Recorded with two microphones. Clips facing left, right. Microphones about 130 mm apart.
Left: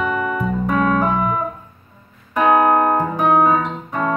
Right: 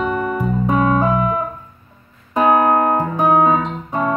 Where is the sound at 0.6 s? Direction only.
25° right (ahead or behind).